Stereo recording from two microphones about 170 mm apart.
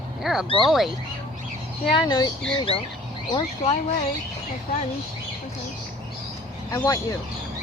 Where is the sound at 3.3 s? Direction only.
30° left (ahead or behind).